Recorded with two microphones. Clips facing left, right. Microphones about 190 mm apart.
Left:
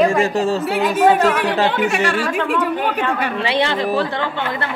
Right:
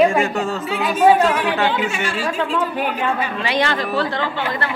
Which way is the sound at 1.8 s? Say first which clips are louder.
Left 4 dB; 70° left (ahead or behind).